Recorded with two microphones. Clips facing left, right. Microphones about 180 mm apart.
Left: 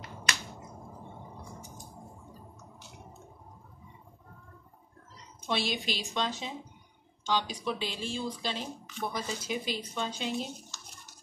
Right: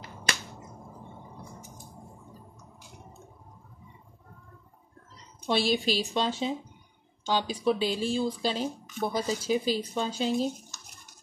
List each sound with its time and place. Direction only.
5.5 s speech: 30° right (ahead or behind)